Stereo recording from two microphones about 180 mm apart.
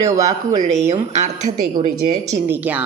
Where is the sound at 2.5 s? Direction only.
10° right (ahead or behind).